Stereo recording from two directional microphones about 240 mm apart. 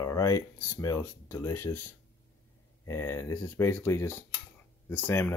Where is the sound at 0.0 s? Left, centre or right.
Centre.